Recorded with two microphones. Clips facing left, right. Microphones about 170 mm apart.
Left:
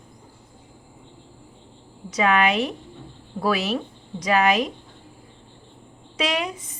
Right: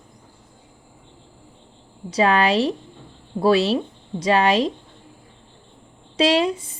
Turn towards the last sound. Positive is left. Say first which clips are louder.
# right 8 dB
turn(degrees=-30)  # may be behind; listen again after turning